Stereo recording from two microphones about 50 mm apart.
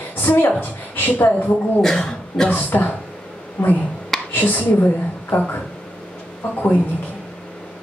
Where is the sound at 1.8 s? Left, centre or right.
Centre.